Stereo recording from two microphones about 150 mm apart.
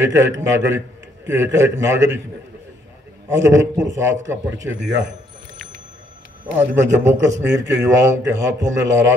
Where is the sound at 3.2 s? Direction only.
20° right (ahead or behind).